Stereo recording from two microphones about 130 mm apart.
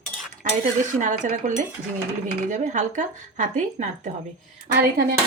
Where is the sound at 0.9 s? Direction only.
75° right (ahead or behind).